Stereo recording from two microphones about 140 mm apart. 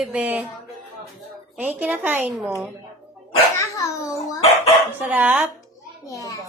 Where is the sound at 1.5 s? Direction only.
10° right (ahead or behind).